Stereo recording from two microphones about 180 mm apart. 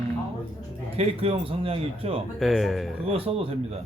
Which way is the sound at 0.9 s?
30° right (ahead or behind).